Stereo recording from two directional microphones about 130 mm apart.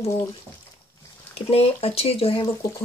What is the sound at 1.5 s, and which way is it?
Speech, 50° left (ahead or behind).